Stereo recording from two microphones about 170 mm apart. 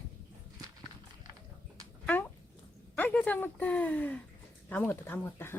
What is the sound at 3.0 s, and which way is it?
Speech, 10° left (ahead or behind).